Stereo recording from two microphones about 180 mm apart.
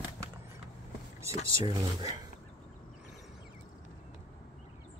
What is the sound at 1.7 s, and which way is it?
Speech, 20° right (ahead or behind).